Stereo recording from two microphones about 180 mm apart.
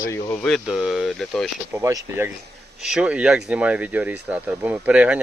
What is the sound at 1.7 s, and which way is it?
Speech, 15° right (ahead or behind).